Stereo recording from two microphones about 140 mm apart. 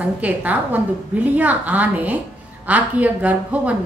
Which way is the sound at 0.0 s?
10° right (ahead or behind).